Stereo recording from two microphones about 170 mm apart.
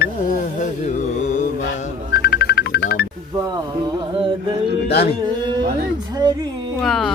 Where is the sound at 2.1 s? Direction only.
70° left (ahead or behind).